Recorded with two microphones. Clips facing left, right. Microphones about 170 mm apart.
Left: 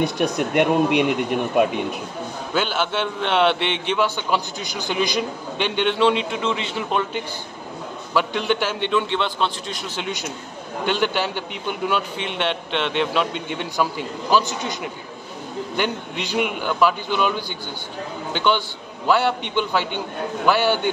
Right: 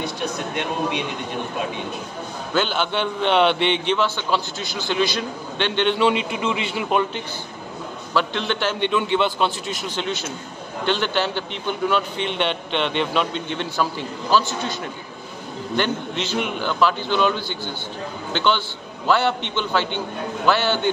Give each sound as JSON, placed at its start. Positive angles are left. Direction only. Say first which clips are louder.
{"t": 0.6, "sound": "a man's voice", "louder": "left 9 dB", "side_deg": 60}
{"t": 2.5, "sound": "a man's voice", "louder": "right 1 dB", "side_deg": 5}
{"t": 5.9, "sound": "a man's voice", "louder": "left 1 dB", "side_deg": -5}
{"t": 8.1, "sound": "a man's voice", "louder": "left 2 dB", "side_deg": 10}
{"t": 9.8, "sound": "a man's voice", "louder": "right 2 dB", "side_deg": 10}